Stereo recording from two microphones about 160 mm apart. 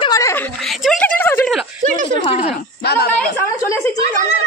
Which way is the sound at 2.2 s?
35° left (ahead or behind).